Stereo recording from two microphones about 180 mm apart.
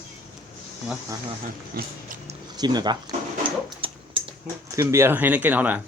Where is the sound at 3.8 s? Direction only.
30° right (ahead or behind).